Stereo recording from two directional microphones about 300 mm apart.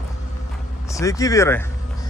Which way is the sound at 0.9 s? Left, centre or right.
Centre.